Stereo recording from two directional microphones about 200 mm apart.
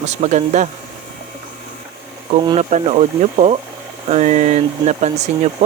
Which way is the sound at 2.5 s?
35° right (ahead or behind).